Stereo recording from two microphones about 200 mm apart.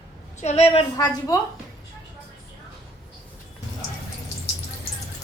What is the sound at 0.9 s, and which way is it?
Speech, 15° left (ahead or behind).